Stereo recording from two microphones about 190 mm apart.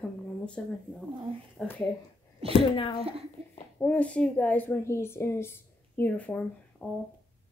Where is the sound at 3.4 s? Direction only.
30° right (ahead or behind).